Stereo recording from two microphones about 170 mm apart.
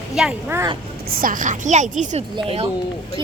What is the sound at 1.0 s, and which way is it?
A woman's voice, 60° right (ahead or behind).